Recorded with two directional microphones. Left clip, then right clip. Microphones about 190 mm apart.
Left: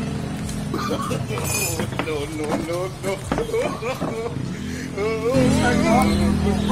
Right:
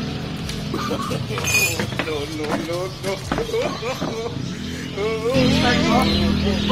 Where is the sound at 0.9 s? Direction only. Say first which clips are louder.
Left 1 dB; centre (ahead or behind).